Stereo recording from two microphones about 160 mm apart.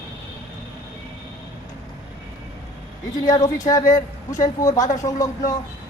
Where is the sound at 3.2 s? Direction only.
50° left (ahead or behind).